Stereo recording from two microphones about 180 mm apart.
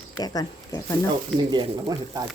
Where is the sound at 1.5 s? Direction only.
25° right (ahead or behind).